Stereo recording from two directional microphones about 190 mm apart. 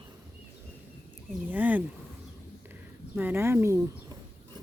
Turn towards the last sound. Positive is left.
turn(degrees=-15)  # may be behind; listen again after turning